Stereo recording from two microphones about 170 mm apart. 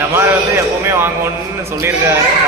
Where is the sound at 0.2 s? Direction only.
15° right (ahead or behind).